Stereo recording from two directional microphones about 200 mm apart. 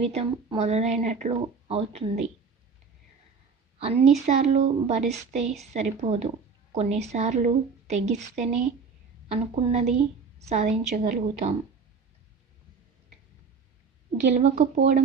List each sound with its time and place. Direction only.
0.0 s a woman's voice: 30° right (ahead or behind)
3.8 s a woman's voice: 30° right (ahead or behind)
14.3 s speech: 40° right (ahead or behind)